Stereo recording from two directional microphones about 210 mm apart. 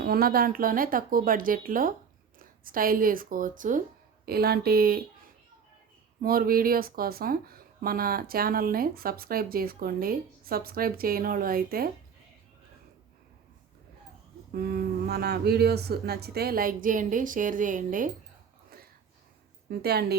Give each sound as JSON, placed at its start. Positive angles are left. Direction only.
{"t": 0.0, "sound": "speech", "side_deg": -45}
{"t": 6.2, "sound": "speech", "side_deg": -45}
{"t": 14.5, "sound": "speech", "side_deg": -45}
{"t": 19.7, "sound": "speech", "side_deg": -50}